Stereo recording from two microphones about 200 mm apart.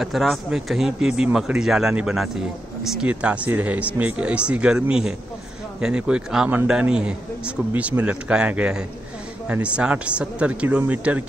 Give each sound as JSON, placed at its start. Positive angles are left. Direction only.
{"t": 0.0, "sound": "a man's voice", "side_deg": 0}